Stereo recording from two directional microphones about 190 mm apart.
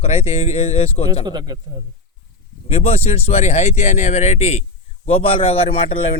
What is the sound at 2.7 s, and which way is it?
Speech, 30° left (ahead or behind).